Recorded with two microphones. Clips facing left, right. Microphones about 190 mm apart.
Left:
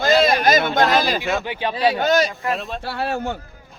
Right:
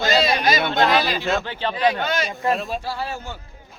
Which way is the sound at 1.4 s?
15° left (ahead or behind).